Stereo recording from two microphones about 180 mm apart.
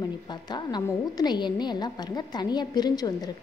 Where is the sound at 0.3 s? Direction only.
25° left (ahead or behind).